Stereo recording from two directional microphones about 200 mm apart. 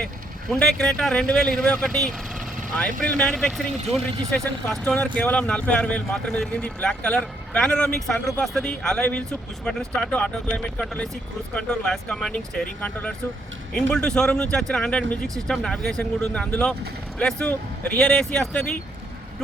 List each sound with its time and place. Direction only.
0.5 s speech: centre (ahead or behind)